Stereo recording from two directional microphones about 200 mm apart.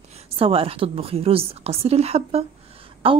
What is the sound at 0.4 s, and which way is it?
A woman's voice, 30° right (ahead or behind).